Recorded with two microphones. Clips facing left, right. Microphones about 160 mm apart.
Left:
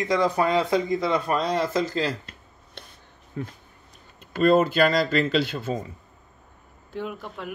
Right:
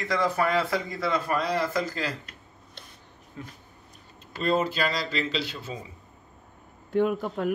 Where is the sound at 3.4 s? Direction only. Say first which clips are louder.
Left 8 dB; 55° left (ahead or behind).